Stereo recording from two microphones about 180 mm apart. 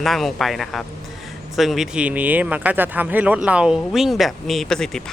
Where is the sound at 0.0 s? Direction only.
Centre (ahead or behind).